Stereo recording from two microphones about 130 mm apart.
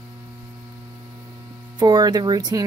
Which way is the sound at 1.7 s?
30° right (ahead or behind).